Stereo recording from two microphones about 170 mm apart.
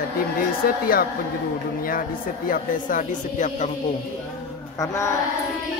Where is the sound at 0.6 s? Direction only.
60° left (ahead or behind).